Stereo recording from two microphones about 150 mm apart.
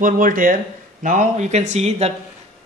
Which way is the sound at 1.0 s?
55° right (ahead or behind).